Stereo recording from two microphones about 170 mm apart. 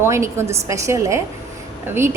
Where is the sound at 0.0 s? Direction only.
15° right (ahead or behind).